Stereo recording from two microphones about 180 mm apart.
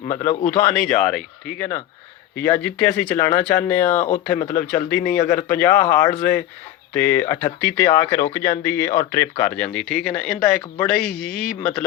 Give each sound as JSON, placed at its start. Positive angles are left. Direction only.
{"t": 0.1, "sound": "speech", "side_deg": 15}
{"t": 4.4, "sound": "speech", "side_deg": 50}
{"t": 4.6, "sound": "a man's voice", "side_deg": 10}